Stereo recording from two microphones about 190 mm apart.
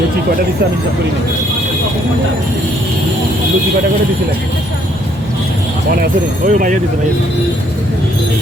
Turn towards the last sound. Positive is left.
turn(degrees=-45)  # may be behind; listen again after turning